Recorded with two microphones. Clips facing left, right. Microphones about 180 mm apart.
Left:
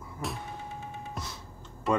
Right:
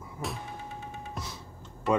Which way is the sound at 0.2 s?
Centre (ahead or behind).